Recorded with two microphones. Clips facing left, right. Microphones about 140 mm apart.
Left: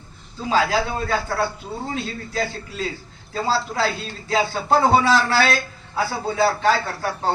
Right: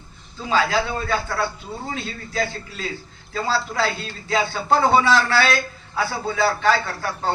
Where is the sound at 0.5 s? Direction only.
35° left (ahead or behind).